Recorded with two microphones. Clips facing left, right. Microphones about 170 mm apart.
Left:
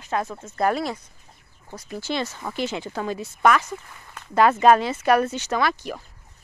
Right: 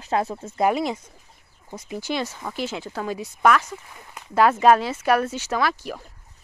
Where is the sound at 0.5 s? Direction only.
15° right (ahead or behind).